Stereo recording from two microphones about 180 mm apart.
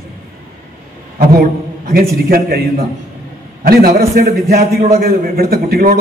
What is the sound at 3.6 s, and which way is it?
A man's voice, 50° right (ahead or behind).